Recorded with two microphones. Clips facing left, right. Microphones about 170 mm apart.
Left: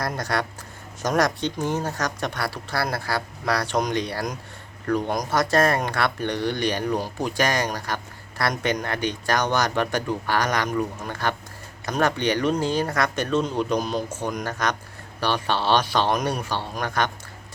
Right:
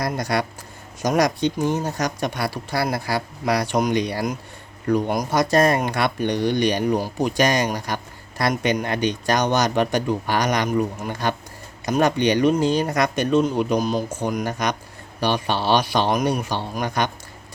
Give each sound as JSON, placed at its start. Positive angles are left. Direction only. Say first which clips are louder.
{"t": 0.2, "sound": "a man's voice", "louder": "right 3 dB", "side_deg": -15}
{"t": 14.1, "sound": "speech", "louder": "right 4 dB", "side_deg": -15}